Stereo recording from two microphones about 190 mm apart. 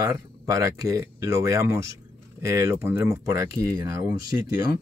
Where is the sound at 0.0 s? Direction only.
15° right (ahead or behind).